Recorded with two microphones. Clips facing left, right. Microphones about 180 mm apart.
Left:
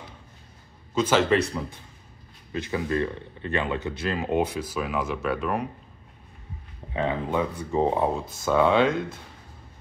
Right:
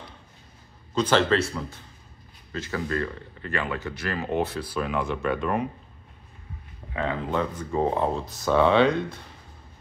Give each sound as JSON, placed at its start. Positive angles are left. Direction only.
{"t": 1.1, "sound": "speech", "side_deg": 15}
{"t": 4.8, "sound": "speech", "side_deg": 5}
{"t": 6.9, "sound": "speech", "side_deg": 20}
{"t": 8.3, "sound": "speech", "side_deg": 0}